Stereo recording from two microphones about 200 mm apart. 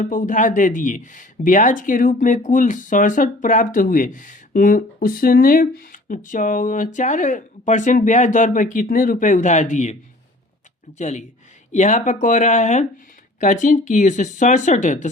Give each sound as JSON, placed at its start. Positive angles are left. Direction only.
{"t": 0.0, "sound": "speech", "side_deg": 40}
{"t": 10.9, "sound": "speech", "side_deg": 35}